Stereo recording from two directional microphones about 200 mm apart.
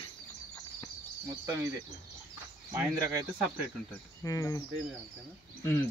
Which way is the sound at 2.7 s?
15° right (ahead or behind).